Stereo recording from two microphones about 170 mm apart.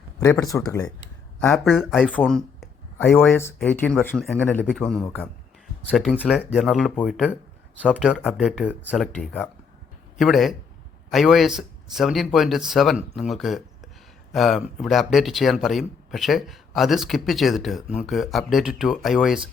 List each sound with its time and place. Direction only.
0.2 s speech: 20° left (ahead or behind)
2.0 s a sound: 5° left (ahead or behind)
3.1 s speech: 15° left (ahead or behind)
5.9 s speech: 5° right (ahead or behind)